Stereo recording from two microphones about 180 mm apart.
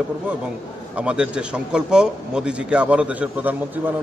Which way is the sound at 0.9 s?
5° right (ahead or behind).